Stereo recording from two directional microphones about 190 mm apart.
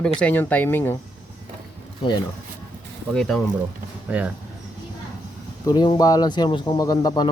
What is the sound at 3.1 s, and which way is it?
Speech, 5° left (ahead or behind).